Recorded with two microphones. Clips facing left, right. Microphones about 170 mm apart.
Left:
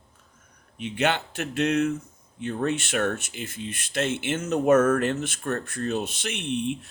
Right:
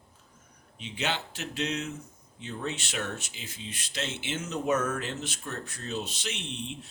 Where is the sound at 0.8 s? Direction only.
55° left (ahead or behind).